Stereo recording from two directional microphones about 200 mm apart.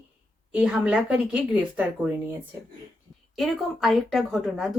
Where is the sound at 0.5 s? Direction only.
5° right (ahead or behind).